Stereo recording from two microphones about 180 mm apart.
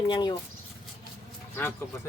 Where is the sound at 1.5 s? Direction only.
10° left (ahead or behind).